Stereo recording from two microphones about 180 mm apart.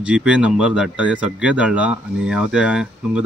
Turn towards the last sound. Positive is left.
turn(degrees=-5)  # may be behind; listen again after turning